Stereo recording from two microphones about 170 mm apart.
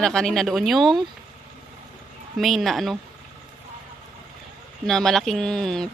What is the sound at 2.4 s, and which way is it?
Speech, centre (ahead or behind).